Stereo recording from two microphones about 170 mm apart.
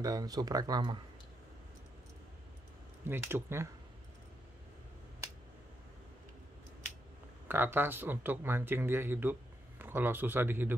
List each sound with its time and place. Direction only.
0.0 s speech: 20° right (ahead or behind)
3.1 s speech: 15° right (ahead or behind)
7.4 s speech: 10° right (ahead or behind)